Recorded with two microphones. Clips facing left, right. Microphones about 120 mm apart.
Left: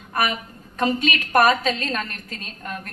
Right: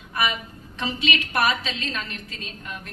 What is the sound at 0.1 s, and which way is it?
A woman's voice, 45° left (ahead or behind).